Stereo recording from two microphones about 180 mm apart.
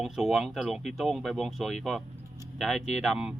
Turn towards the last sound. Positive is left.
turn(degrees=-5)  # may be behind; listen again after turning